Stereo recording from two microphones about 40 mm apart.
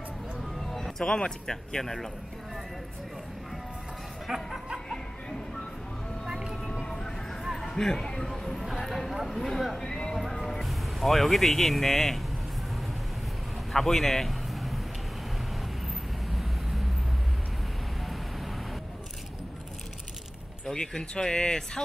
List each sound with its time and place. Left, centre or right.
0.6 s music: centre
1.5 s speech: centre
4.3 s speech: centre
7.7 s speech: centre
8.3 s clip-clop: centre
9.3 s speech: centre
9.8 s a sound: centre
10.4 s speech: centre
13.7 s speech: centre
20.7 s speech: centre